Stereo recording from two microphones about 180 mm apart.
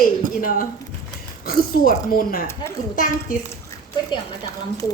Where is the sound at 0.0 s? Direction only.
50° left (ahead or behind).